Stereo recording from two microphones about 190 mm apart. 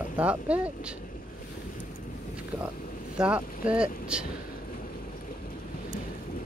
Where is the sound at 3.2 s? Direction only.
5° right (ahead or behind).